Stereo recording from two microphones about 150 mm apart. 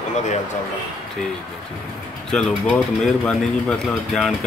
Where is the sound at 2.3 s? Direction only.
5° left (ahead or behind).